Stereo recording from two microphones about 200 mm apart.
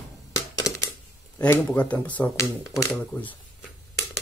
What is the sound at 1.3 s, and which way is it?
Speech, 10° left (ahead or behind).